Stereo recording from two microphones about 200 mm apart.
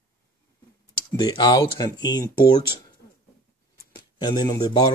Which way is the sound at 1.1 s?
20° left (ahead or behind).